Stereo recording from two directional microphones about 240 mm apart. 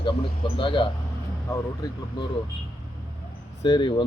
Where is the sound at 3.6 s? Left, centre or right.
Centre.